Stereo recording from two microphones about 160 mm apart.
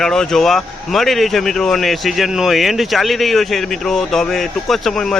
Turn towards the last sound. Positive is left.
turn(degrees=5)  # may be behind; listen again after turning